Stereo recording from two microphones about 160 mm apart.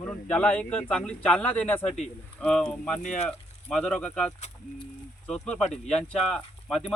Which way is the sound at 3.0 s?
45° left (ahead or behind).